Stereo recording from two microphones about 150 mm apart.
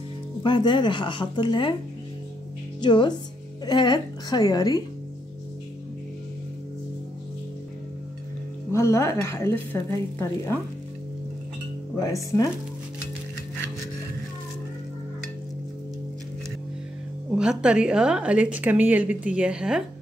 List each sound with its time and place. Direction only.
0.4 s speech: 30° left (ahead or behind)
2.8 s speech: 30° left (ahead or behind)
8.7 s speech: 20° left (ahead or behind)
12.0 s speech: 20° left (ahead or behind)
17.3 s a woman's voice: 5° right (ahead or behind)